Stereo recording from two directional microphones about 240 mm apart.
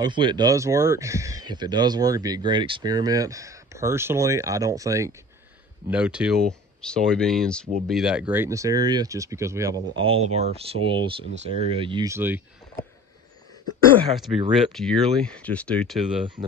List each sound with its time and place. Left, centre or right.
0.0 s speech: centre
14.5 s speech: centre